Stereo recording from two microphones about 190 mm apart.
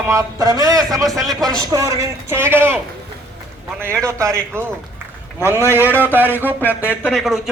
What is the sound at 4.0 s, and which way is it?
Speech, 15° right (ahead or behind).